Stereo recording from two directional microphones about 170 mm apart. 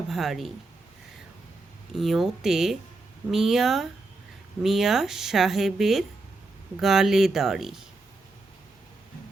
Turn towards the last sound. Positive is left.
turn(degrees=0)  # may be behind; listen again after turning